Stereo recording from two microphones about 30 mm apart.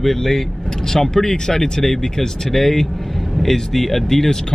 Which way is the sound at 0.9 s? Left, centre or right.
Centre.